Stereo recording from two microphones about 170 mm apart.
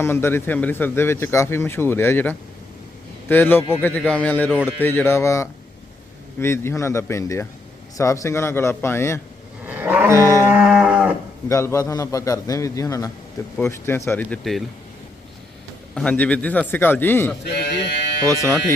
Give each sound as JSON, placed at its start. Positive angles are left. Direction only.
{"t": 0.0, "sound": "speech", "side_deg": 15}
{"t": 9.6, "sound": "livestock", "side_deg": -10}
{"t": 10.6, "sound": "moo", "side_deg": -5}
{"t": 11.4, "sound": "a man's voice", "side_deg": 15}
{"t": 16.0, "sound": "speech", "side_deg": 5}
{"t": 17.5, "sound": "a sound", "side_deg": 75}